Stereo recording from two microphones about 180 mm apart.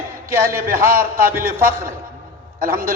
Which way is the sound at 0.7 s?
50° right (ahead or behind).